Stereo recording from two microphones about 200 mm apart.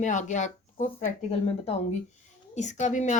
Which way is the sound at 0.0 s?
40° left (ahead or behind).